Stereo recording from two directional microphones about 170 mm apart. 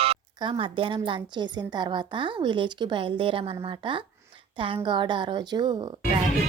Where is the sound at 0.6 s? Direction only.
30° right (ahead or behind).